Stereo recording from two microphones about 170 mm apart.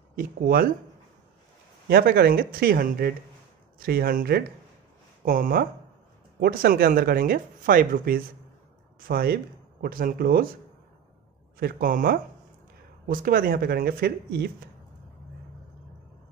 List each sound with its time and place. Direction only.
0.1 s speech: 55° right (ahead or behind)
1.9 s speech: 65° right (ahead or behind)
11.6 s speech: 55° right (ahead or behind)